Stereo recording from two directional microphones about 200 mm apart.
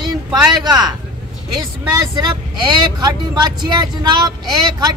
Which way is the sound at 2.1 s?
20° right (ahead or behind).